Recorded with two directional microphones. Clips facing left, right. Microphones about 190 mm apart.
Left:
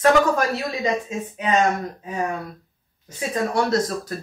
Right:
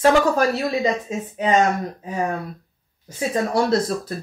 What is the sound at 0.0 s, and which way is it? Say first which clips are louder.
Speech: right 1 dB; 30° right (ahead or behind).